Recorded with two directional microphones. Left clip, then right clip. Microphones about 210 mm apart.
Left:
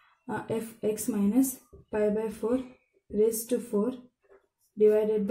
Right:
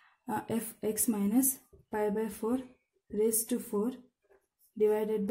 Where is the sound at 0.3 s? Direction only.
45° right (ahead or behind).